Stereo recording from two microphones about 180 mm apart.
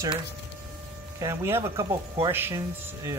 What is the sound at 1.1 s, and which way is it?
Speech, 15° right (ahead or behind).